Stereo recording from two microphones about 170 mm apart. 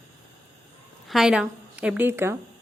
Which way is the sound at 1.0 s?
Centre (ahead or behind).